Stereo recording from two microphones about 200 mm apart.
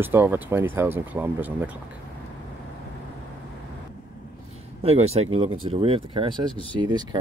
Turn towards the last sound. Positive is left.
turn(degrees=-20)  # may be behind; listen again after turning